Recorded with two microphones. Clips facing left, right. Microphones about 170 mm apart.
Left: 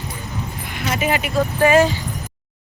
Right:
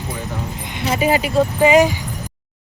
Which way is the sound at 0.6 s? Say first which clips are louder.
Right 4 dB; 20° right (ahead or behind).